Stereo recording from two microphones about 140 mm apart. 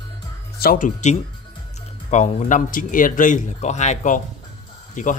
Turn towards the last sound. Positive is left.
turn(degrees=60)  # may be behind; listen again after turning